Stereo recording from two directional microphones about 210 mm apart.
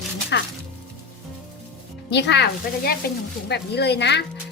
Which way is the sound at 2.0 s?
55° left (ahead or behind).